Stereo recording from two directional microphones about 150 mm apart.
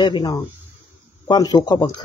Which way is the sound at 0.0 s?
30° left (ahead or behind).